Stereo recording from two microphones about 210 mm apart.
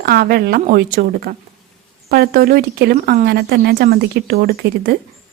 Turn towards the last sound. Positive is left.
turn(degrees=-50)  # may be behind; listen again after turning